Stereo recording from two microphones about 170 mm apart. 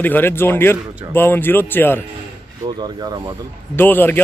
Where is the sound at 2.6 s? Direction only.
25° right (ahead or behind).